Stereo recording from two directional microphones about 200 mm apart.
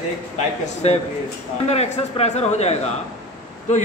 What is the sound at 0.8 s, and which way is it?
A man's voice, 30° left (ahead or behind).